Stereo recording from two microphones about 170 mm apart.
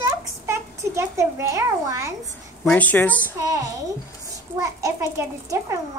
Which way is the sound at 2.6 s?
10° left (ahead or behind).